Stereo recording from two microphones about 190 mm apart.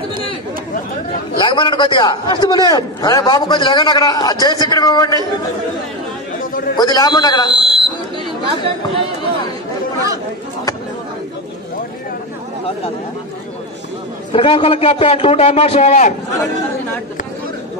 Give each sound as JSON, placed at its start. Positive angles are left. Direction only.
{"t": 1.4, "sound": "a man's voice", "side_deg": 25}
{"t": 6.8, "sound": "a man's voice", "side_deg": 20}
{"t": 7.6, "sound": "buzzer", "side_deg": -30}
{"t": 14.3, "sound": "a man's voice", "side_deg": 30}